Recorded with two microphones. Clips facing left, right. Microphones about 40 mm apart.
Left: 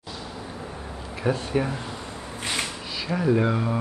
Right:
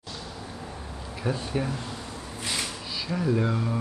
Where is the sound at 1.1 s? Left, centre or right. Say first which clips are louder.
Left 5 dB; centre.